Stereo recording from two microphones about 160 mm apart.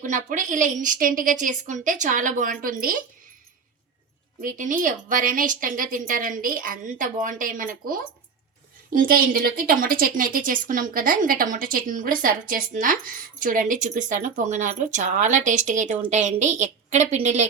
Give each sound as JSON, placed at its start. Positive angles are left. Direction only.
{"t": 0.0, "sound": "a woman's voice", "side_deg": -50}
{"t": 4.4, "sound": "a woman's voice", "side_deg": -55}